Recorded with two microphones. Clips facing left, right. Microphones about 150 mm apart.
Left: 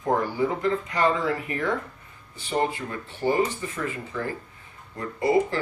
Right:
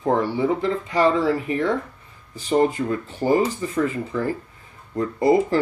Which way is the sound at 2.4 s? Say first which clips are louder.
Right 7 dB; 40° right (ahead or behind).